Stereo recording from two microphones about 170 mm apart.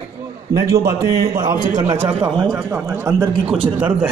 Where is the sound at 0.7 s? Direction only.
15° right (ahead or behind).